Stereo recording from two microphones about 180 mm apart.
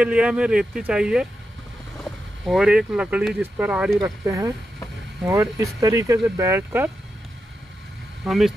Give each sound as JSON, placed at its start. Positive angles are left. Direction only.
{"t": 0.0, "sound": "speech", "side_deg": -5}
{"t": 4.0, "sound": "speech", "side_deg": -20}
{"t": 8.2, "sound": "speech", "side_deg": 0}